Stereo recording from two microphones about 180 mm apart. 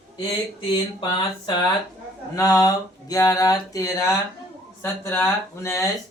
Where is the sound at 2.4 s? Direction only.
20° left (ahead or behind).